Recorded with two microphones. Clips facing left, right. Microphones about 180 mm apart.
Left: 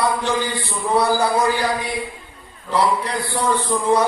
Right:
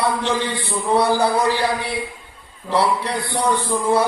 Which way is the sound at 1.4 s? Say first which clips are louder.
Even; 30° right (ahead or behind).